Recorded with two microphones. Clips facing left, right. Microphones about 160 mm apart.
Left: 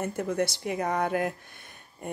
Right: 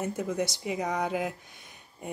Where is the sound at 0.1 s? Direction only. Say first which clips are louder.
Left 1 dB; 5° right (ahead or behind).